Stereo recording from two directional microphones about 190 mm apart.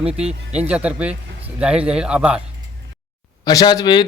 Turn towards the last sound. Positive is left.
turn(degrees=25)  # may be behind; listen again after turning